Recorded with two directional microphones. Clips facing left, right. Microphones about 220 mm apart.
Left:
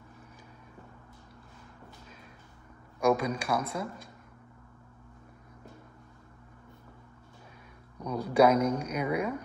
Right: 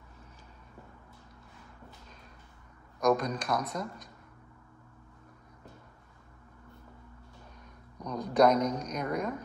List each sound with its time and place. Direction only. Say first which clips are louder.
3.0 s speech: left 1 dB; 10° left (ahead or behind)
8.0 s speech: left 1 dB; 10° left (ahead or behind)